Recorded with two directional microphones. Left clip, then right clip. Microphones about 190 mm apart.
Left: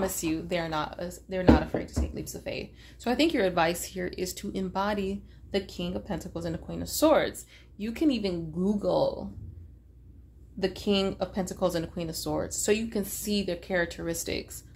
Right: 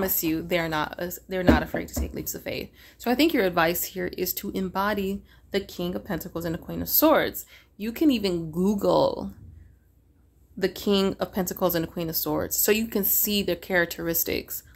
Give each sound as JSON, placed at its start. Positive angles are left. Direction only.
{"t": 0.0, "sound": "speech", "side_deg": -35}
{"t": 10.6, "sound": "speech", "side_deg": -45}